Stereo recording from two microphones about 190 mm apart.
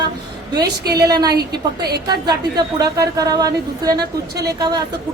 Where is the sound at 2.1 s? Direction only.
20° right (ahead or behind).